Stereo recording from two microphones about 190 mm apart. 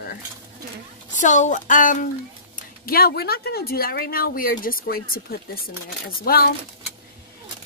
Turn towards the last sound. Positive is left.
turn(degrees=50)  # may be behind; listen again after turning